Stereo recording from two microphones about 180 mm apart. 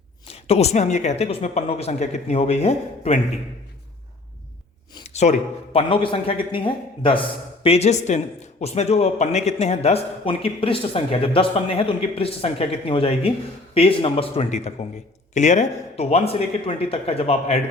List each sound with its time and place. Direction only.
0.3 s speech: 35° left (ahead or behind)
5.0 s a sound: 40° left (ahead or behind)
5.7 s a man's voice: 30° left (ahead or behind)